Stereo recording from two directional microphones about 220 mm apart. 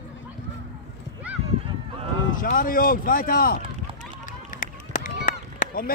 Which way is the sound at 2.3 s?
40° left (ahead or behind).